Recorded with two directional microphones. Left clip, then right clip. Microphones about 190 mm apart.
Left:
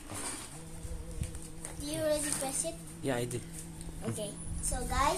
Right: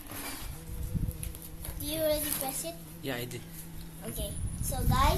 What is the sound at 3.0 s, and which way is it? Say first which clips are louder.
Speech: left 3 dB; 30° left (ahead or behind).